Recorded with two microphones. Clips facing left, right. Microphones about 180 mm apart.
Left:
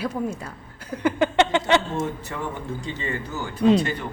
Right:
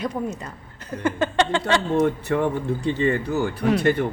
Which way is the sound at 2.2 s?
60° right (ahead or behind).